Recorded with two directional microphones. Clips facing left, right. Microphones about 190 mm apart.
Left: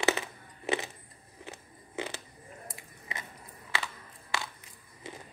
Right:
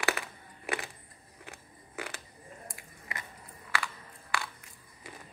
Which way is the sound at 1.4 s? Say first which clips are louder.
Left 4 dB; 20° left (ahead or behind).